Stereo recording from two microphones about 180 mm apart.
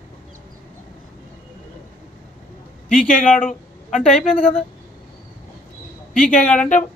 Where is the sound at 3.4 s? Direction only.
40° left (ahead or behind).